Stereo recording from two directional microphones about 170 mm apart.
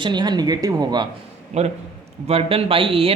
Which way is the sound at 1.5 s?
40° right (ahead or behind).